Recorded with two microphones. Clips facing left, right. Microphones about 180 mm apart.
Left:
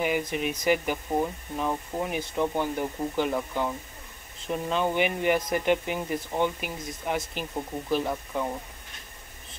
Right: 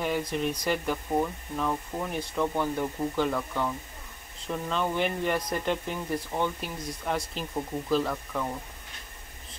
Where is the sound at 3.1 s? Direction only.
20° left (ahead or behind).